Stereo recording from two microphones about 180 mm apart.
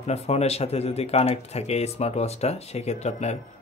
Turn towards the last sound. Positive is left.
turn(degrees=40)  # may be behind; listen again after turning